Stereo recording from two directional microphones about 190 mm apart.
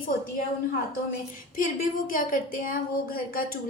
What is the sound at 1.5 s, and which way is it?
A woman's voice, 45° left (ahead or behind).